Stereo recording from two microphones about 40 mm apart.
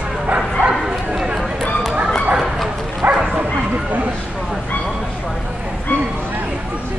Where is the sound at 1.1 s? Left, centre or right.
Centre.